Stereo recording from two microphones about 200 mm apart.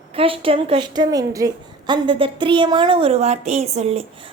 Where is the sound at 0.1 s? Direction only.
30° right (ahead or behind).